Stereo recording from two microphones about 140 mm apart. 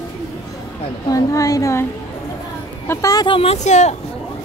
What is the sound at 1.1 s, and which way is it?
Speech, 25° left (ahead or behind).